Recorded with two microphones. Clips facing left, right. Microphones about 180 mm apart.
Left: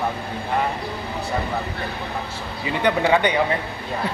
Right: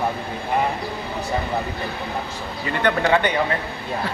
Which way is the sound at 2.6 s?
10° left (ahead or behind).